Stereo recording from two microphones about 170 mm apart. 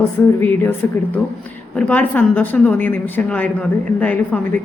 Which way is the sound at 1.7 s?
5° left (ahead or behind).